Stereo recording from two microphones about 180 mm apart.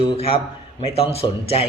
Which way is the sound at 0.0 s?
30° left (ahead or behind).